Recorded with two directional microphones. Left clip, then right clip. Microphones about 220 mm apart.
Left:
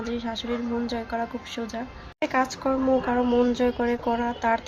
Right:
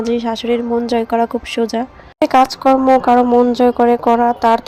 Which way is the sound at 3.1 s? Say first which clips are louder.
Right 11 dB; 20° right (ahead or behind).